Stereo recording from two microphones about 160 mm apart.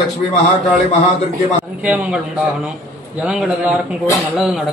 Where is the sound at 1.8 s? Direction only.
5° right (ahead or behind).